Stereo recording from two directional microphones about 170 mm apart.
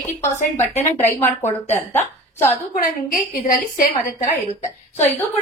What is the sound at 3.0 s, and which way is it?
Speech, 55° left (ahead or behind).